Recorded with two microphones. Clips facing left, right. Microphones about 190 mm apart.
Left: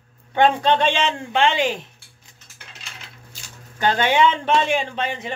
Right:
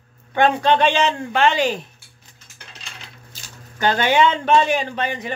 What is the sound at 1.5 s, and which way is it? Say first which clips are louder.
Speech: right 1 dB; 40° right (ahead or behind).